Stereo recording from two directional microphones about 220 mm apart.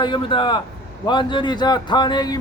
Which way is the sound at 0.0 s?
20° left (ahead or behind).